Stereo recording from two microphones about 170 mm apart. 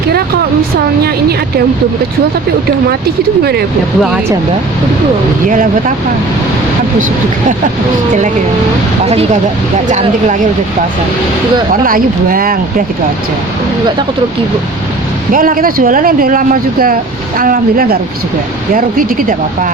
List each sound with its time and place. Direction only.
1.0 s speech: 65° right (ahead or behind)
9.0 s speech: 40° right (ahead or behind)
11.7 s speech: 55° right (ahead or behind)
15.3 s speech: 55° right (ahead or behind)